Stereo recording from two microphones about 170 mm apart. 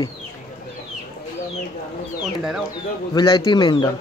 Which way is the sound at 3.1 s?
25° left (ahead or behind).